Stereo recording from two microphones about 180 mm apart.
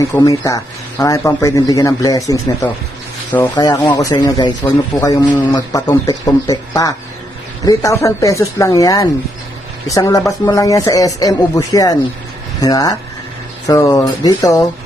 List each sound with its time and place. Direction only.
0.0 s a man's voice: 20° left (ahead or behind)